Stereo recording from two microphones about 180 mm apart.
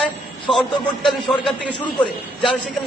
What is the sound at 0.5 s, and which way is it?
A man's voice, centre (ahead or behind).